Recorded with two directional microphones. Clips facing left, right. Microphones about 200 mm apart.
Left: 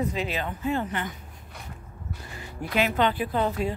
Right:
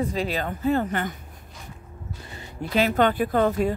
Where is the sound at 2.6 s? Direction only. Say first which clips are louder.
Right 2 dB; 25° right (ahead or behind).